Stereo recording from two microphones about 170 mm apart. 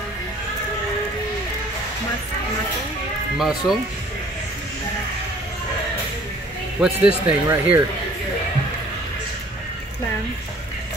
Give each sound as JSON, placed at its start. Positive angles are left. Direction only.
{"t": 3.3, "sound": "speech", "side_deg": 0}
{"t": 6.8, "sound": "speech", "side_deg": -10}